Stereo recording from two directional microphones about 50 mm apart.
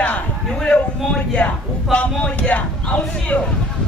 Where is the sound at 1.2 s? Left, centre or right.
Left.